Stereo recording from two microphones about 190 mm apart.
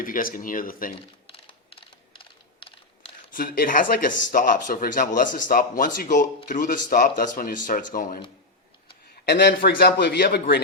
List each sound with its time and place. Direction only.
0.0 s speech: 50° left (ahead or behind)
1.3 s typing: 25° left (ahead or behind)
3.3 s speech: 45° left (ahead or behind)
9.2 s a man's voice: 55° left (ahead or behind)